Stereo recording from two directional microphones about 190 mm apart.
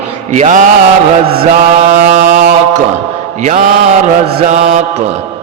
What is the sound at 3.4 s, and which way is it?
Mantra, 45° right (ahead or behind).